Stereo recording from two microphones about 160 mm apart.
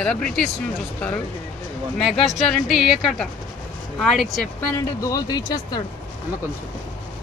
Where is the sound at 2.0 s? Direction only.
Centre (ahead or behind).